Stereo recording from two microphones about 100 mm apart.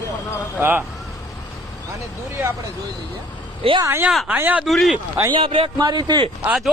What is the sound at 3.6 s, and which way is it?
Speech, 75° right (ahead or behind).